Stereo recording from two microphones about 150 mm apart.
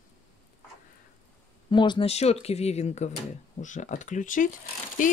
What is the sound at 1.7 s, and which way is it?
Speech, 35° left (ahead or behind).